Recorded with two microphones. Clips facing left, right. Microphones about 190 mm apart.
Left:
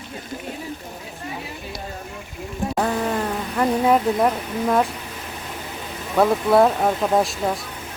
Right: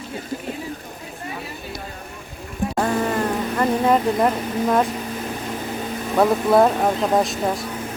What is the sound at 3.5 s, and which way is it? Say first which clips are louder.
Speech: left 1 dB; 5° left (ahead or behind).